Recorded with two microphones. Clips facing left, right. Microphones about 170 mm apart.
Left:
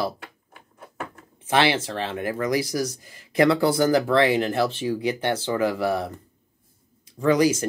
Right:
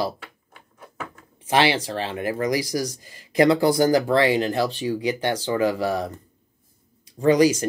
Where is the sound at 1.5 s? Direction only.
10° right (ahead or behind).